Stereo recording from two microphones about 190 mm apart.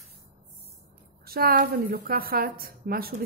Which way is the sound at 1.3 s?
50° right (ahead or behind).